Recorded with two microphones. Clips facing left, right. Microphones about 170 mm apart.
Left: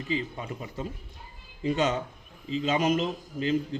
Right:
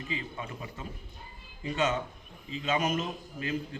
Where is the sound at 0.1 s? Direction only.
35° left (ahead or behind).